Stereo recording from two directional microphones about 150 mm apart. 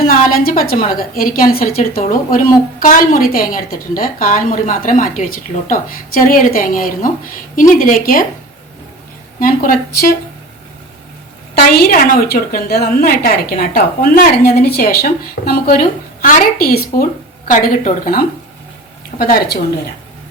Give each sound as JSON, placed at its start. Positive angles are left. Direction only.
{"t": 0.0, "sound": "a woman's voice", "side_deg": 75}
{"t": 9.4, "sound": "a woman's voice", "side_deg": 70}
{"t": 11.8, "sound": "a woman's voice", "side_deg": 70}
{"t": 17.5, "sound": "a woman's voice", "side_deg": 65}